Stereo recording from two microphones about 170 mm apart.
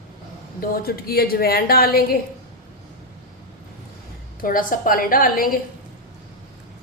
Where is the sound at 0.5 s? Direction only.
60° left (ahead or behind).